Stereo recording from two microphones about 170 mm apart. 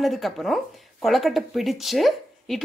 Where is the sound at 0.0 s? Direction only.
Centre (ahead or behind).